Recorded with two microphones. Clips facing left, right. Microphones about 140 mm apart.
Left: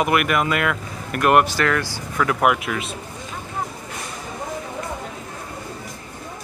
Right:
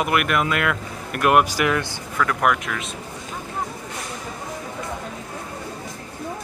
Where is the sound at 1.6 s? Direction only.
20° right (ahead or behind).